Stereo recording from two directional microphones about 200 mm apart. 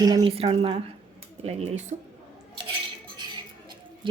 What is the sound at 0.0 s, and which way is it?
A woman's voice, 20° right (ahead or behind).